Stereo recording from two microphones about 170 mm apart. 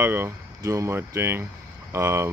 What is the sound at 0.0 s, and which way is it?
Speech, 15° right (ahead or behind).